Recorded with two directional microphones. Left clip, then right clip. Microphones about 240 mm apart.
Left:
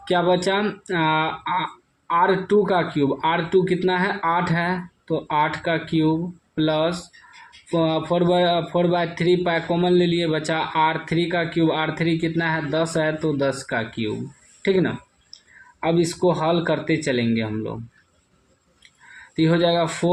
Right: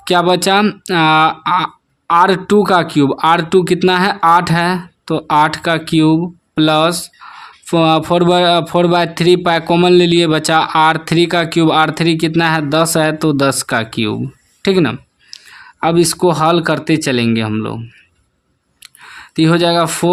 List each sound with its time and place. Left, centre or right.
0.1 s a man's voice: right
19.4 s a man's voice: right